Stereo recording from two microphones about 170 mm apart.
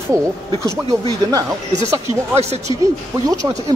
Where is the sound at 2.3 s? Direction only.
40° right (ahead or behind).